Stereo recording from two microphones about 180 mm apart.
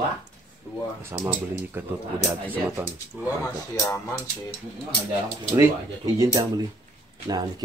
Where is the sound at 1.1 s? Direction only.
15° right (ahead or behind).